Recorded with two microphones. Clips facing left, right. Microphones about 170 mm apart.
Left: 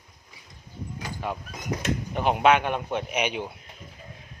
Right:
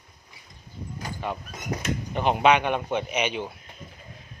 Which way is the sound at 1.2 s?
5° left (ahead or behind).